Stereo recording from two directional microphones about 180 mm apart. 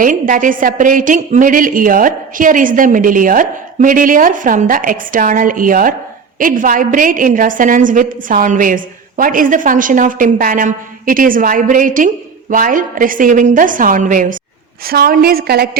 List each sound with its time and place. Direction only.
0.0 s a woman's voice: 50° right (ahead or behind)